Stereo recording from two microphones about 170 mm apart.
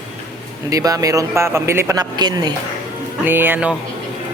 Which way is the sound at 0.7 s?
20° right (ahead or behind).